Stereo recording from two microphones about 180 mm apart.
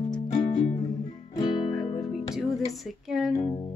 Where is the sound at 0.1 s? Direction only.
35° left (ahead or behind).